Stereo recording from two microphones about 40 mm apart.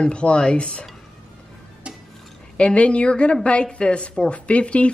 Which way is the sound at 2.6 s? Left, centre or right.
Left.